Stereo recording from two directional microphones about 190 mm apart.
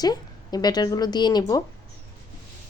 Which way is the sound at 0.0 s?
20° left (ahead or behind).